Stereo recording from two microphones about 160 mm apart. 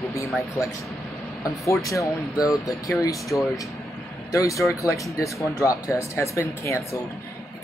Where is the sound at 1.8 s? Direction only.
20° left (ahead or behind).